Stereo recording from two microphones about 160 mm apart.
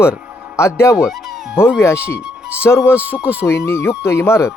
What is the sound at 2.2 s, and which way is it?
Music, 5° right (ahead or behind).